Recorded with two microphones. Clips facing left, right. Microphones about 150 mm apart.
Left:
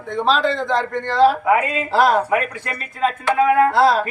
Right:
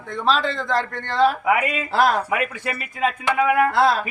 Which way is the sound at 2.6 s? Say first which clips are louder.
Left 2 dB; 15° right (ahead or behind).